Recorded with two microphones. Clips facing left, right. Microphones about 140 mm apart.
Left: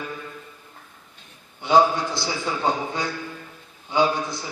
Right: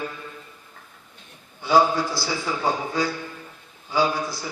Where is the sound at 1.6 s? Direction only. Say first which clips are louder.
Left 1 dB; 20° left (ahead or behind).